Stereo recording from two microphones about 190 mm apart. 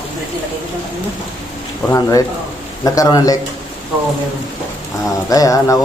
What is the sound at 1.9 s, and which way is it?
Speech, 20° left (ahead or behind).